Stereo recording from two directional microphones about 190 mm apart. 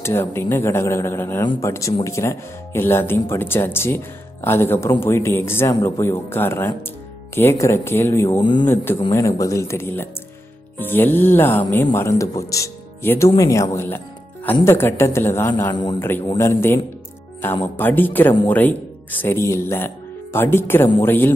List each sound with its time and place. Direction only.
0.0 s speech: 15° left (ahead or behind)
8.4 s speech: 25° left (ahead or behind)
15.7 s speech: 25° left (ahead or behind)
16.0 s speech: 10° left (ahead or behind)